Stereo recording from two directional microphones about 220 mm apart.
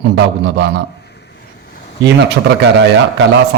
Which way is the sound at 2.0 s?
50° right (ahead or behind).